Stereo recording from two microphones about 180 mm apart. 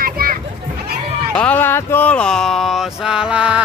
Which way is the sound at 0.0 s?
50° right (ahead or behind).